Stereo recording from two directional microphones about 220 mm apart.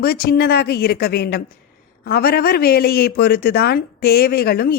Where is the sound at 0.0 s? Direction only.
45° left (ahead or behind).